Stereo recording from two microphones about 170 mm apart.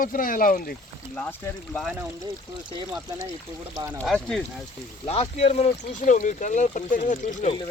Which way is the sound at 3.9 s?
5° left (ahead or behind).